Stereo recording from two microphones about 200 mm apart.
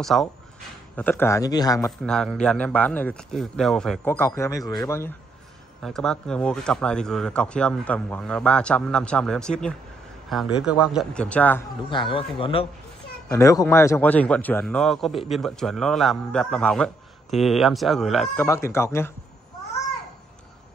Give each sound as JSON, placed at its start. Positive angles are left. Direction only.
{"t": 0.0, "sound": "a man's voice", "side_deg": 0}
{"t": 1.9, "sound": "a man's voice", "side_deg": 0}
{"t": 5.8, "sound": "speech", "side_deg": 0}
{"t": 11.9, "sound": "a man's voice", "side_deg": 25}
{"t": 18.4, "sound": "a man's voice", "side_deg": 15}